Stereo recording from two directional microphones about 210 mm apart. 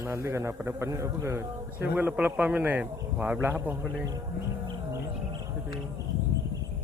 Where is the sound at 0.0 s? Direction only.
10° right (ahead or behind).